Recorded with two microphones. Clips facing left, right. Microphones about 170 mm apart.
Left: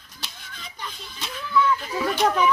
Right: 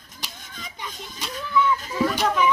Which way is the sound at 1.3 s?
40° right (ahead or behind).